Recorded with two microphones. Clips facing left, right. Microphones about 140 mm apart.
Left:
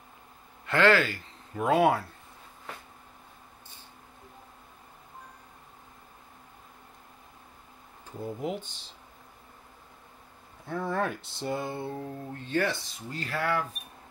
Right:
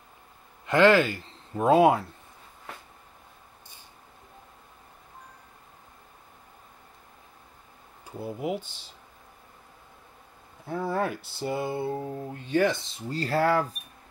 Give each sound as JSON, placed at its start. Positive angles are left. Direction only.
{"t": 0.7, "sound": "speech", "side_deg": -15}
{"t": 8.0, "sound": "speech", "side_deg": -10}
{"t": 10.7, "sound": "speech", "side_deg": -10}